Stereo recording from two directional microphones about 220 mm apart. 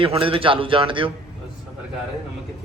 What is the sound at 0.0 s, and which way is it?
A man's voice, 25° right (ahead or behind).